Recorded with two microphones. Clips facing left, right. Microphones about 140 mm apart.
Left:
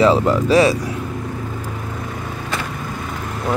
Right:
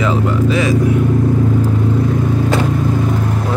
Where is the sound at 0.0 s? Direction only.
35° left (ahead or behind).